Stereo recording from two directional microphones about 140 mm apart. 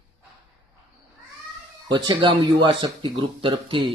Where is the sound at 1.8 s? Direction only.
35° right (ahead or behind).